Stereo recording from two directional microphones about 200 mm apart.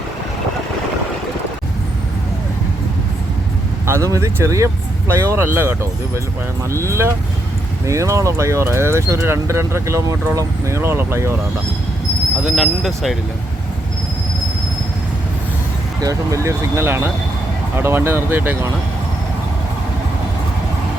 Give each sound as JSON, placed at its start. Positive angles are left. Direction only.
{"t": 3.8, "sound": "speech", "side_deg": -15}
{"t": 12.4, "sound": "speech", "side_deg": -5}
{"t": 16.0, "sound": "speech", "side_deg": -15}